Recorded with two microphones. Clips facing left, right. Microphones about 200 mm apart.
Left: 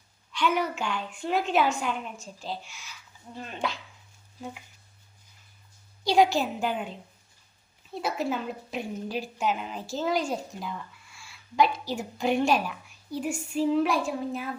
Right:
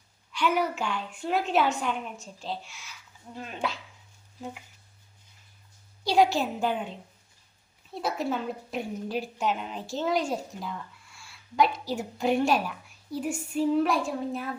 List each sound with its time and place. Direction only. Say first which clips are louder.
0.3 s a woman's voice: even; 5° right (ahead or behind)
6.1 s a woman's voice: left 1 dB; 5° right (ahead or behind)